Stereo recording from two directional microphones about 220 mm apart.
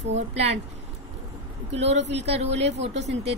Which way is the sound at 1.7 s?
30° right (ahead or behind).